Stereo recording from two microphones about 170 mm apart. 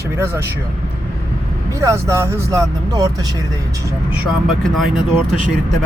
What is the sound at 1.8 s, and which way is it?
Speech, 15° right (ahead or behind).